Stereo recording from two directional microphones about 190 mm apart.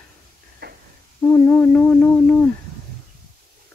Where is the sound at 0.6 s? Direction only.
55° right (ahead or behind).